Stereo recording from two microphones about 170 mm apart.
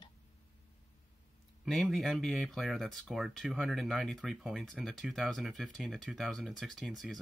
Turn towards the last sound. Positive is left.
turn(degrees=0)  # may be behind; listen again after turning